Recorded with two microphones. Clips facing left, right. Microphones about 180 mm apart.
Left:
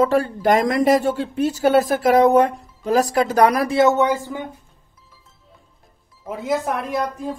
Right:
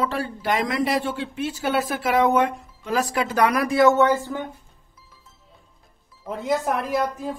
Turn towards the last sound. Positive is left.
turn(degrees=0)  # may be behind; listen again after turning